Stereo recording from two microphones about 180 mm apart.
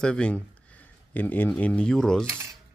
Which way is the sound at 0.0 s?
5° left (ahead or behind).